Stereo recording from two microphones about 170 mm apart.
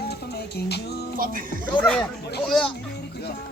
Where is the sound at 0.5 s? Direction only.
75° left (ahead or behind).